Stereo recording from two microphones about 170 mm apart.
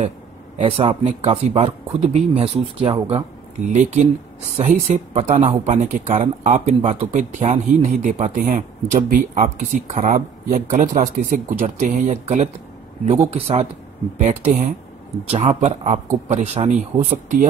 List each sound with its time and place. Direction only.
0.6 s speech: 35° right (ahead or behind)